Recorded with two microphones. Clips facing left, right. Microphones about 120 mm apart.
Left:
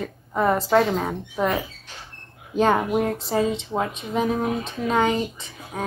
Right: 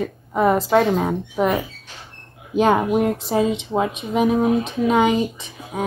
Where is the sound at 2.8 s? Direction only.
15° right (ahead or behind).